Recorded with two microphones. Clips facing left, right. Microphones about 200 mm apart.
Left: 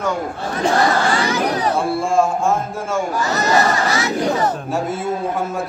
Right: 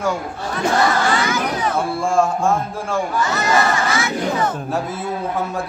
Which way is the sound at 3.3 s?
40° left (ahead or behind).